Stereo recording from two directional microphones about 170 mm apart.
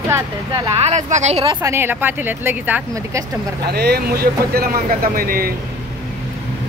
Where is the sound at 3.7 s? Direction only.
70° right (ahead or behind).